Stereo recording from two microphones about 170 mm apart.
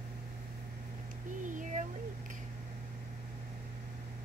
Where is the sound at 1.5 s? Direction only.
50° right (ahead or behind).